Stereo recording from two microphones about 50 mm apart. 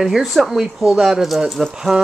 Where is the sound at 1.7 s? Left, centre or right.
Centre.